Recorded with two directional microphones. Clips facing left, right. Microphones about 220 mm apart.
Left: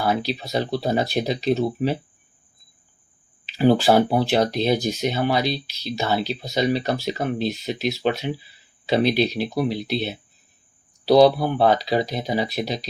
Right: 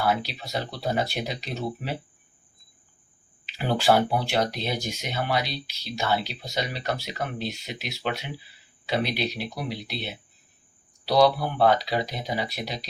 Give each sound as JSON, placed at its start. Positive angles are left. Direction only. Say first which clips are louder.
{"t": 0.0, "sound": "speech", "louder": "left 3 dB", "side_deg": 40}
{"t": 3.8, "sound": "speech", "louder": "left 4 dB", "side_deg": 40}
{"t": 11.1, "sound": "speech", "louder": "left 6 dB", "side_deg": 30}